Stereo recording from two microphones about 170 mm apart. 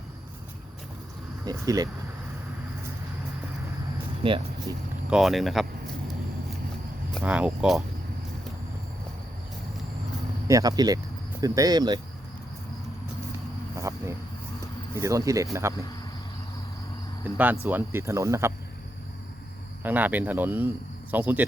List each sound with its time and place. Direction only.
1.5 s speech: 20° right (ahead or behind)
4.2 s speech: 30° right (ahead or behind)
4.7 s speech: 20° right (ahead or behind)
5.0 s speech: centre (ahead or behind)
7.2 s speech: 5° right (ahead or behind)
10.5 s speech: 20° right (ahead or behind)
13.7 s cricket: 15° right (ahead or behind)
14.9 s speech: 20° right (ahead or behind)
17.3 s speech: 10° right (ahead or behind)
19.8 s speech: 10° right (ahead or behind)